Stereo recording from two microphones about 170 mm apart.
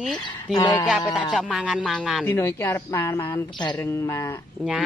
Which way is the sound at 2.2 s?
15° left (ahead or behind).